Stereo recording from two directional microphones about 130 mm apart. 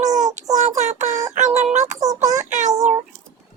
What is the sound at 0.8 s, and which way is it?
Synthetic singing, 65° right (ahead or behind).